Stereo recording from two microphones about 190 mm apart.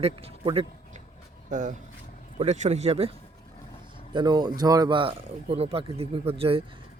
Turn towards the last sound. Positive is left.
turn(degrees=-30)  # may be behind; listen again after turning